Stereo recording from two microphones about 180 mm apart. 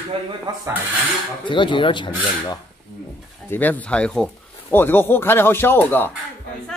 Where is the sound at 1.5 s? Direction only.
25° left (ahead or behind).